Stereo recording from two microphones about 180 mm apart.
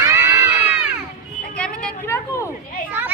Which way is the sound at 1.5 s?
5° left (ahead or behind).